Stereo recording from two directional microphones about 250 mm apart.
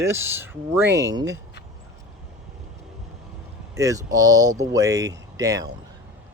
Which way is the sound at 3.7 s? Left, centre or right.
Centre.